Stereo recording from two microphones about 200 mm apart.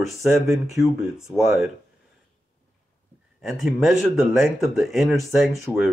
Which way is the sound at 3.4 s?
Centre (ahead or behind).